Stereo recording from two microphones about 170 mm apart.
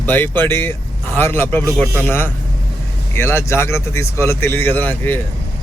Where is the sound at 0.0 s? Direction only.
10° left (ahead or behind).